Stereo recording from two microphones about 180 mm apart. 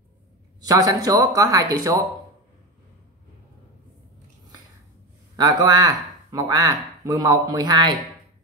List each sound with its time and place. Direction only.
0.7 s speech: 20° right (ahead or behind)
5.3 s speech: 20° right (ahead or behind)